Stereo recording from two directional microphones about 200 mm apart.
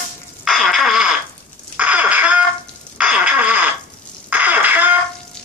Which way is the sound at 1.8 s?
5° right (ahead or behind).